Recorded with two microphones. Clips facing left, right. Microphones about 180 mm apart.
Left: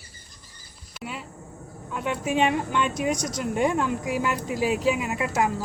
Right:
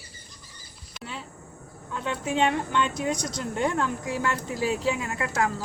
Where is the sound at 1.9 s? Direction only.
15° left (ahead or behind).